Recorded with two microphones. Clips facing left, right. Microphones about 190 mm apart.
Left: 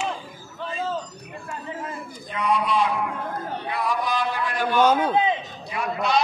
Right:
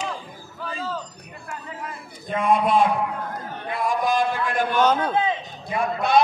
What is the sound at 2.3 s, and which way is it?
Speech, 50° right (ahead or behind).